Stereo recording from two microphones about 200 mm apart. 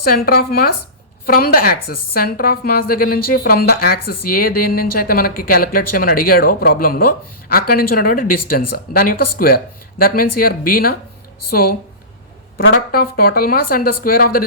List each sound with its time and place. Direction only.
0.0 s a woman's voice: 50° left (ahead or behind)
12.7 s a woman's voice: 50° left (ahead or behind)